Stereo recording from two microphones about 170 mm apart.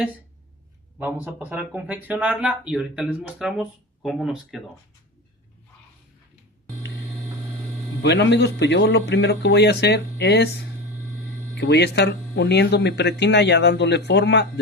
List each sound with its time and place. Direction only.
0.9 s speech: 10° right (ahead or behind)
8.0 s speech: 90° left; by 10.7 s 75° left (ahead or behind)
11.5 s speech: 85° left